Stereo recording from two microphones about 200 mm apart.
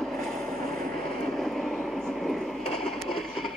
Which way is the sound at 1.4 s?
Centre (ahead or behind).